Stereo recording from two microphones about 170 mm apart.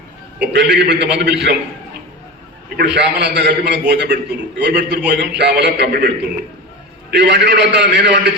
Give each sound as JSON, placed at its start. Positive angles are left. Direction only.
{"t": 0.4, "sound": "a man's voice", "side_deg": -90}
{"t": 2.7, "sound": "a man's voice", "side_deg": -90}
{"t": 7.1, "sound": "a man's voice", "side_deg": -85}